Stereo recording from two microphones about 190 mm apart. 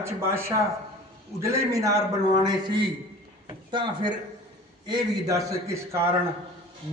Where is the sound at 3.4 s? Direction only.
25° right (ahead or behind).